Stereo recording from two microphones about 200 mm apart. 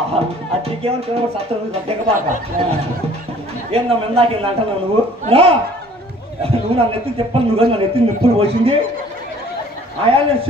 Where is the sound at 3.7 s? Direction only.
30° right (ahead or behind).